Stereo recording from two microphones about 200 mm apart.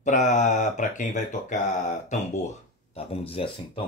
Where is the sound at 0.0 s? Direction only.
35° left (ahead or behind).